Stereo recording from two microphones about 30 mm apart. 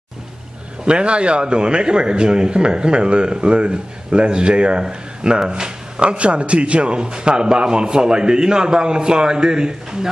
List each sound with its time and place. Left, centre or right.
0.8 s a man's voice: right